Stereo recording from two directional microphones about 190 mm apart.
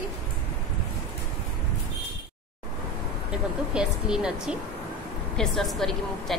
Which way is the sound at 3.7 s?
5° right (ahead or behind).